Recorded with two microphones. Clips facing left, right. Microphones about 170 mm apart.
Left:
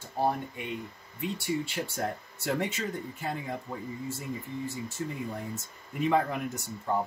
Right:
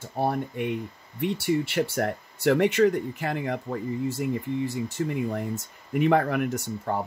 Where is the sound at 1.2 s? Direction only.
70° right (ahead or behind).